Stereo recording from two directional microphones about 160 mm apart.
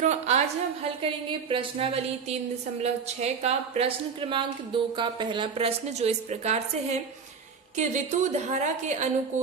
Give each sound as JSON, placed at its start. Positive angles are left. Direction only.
{"t": 0.0, "sound": "a woman's voice", "side_deg": -45}
{"t": 1.0, "sound": "a woman's voice", "side_deg": -35}